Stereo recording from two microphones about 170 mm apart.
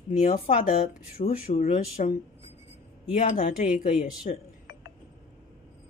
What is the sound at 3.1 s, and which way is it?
Speech, 45° left (ahead or behind).